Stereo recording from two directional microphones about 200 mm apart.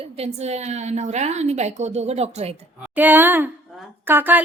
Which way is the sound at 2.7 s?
5° right (ahead or behind).